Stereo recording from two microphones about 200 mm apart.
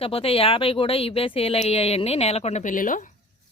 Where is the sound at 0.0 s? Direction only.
30° left (ahead or behind).